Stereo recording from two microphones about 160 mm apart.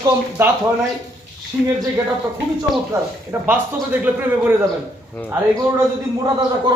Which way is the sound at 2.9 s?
20° right (ahead or behind).